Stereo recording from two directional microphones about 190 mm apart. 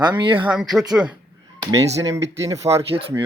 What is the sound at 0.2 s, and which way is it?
Speech, 25° right (ahead or behind).